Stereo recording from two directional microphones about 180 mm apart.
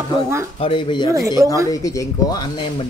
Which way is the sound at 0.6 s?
30° left (ahead or behind).